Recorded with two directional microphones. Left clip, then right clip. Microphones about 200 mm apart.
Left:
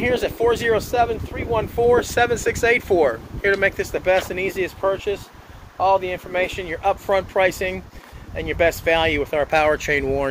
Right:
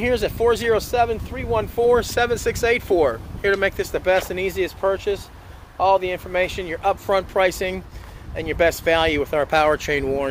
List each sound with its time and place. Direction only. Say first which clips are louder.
0.0 s speech: even; 10° right (ahead or behind)
3.9 s speech: even; 15° right (ahead or behind)